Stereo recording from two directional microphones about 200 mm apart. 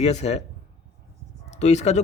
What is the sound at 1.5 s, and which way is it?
Speech, 35° left (ahead or behind).